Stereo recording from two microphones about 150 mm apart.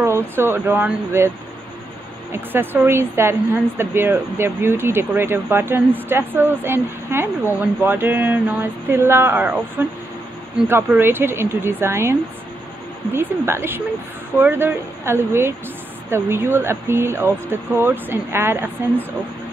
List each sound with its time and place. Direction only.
0.0 s speech: 15° right (ahead or behind)
2.3 s speech: 15° right (ahead or behind)